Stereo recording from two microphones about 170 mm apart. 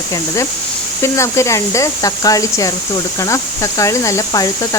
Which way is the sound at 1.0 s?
15° left (ahead or behind).